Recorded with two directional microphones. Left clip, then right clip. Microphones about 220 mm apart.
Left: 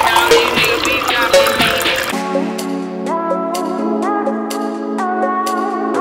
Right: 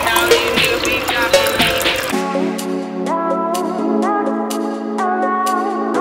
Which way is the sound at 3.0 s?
Centre (ahead or behind).